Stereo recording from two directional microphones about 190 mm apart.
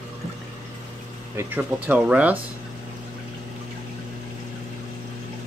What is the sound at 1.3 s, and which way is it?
Speech, 10° right (ahead or behind).